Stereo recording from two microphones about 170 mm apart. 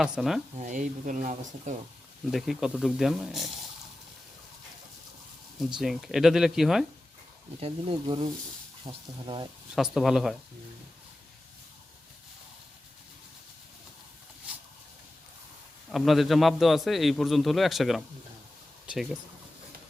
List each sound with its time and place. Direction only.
0.0 s a man's voice: 5° right (ahead or behind)
0.6 s speech: 45° right (ahead or behind)
2.3 s a man's voice: centre (ahead or behind)
5.5 s a man's voice: centre (ahead or behind)
7.6 s speech: 30° right (ahead or behind)
9.7 s a man's voice: centre (ahead or behind)
14.5 s a sound: 5° right (ahead or behind)
15.9 s a man's voice: centre (ahead or behind)